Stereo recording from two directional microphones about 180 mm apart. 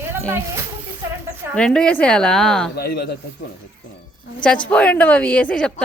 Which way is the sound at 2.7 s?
60° left (ahead or behind).